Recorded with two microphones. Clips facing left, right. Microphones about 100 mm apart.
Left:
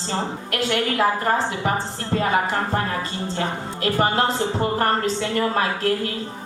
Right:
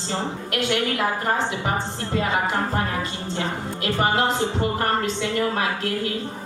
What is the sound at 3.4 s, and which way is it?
Music, 40° left (ahead or behind).